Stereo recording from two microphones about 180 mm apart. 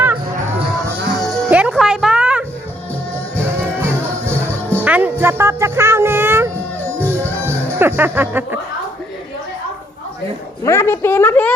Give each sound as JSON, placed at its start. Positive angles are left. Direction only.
{"t": 1.2, "sound": "music", "side_deg": 0}
{"t": 4.8, "sound": "music", "side_deg": -10}
{"t": 10.6, "sound": "a woman's voice", "side_deg": 15}